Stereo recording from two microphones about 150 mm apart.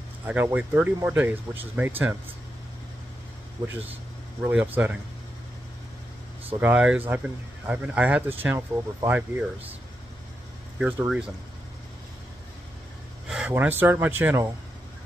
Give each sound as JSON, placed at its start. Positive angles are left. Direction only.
{"t": 0.3, "sound": "speech", "side_deg": -10}
{"t": 3.6, "sound": "speech", "side_deg": -25}
{"t": 4.4, "sound": "speech", "side_deg": -10}
{"t": 6.6, "sound": "speech", "side_deg": -10}
{"t": 10.8, "sound": "speech", "side_deg": -5}
{"t": 13.3, "sound": "speech", "side_deg": -10}